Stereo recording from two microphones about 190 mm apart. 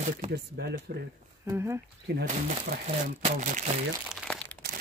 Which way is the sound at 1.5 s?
15° right (ahead or behind).